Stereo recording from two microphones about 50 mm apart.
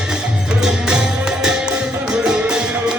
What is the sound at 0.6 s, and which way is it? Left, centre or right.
Music, centre.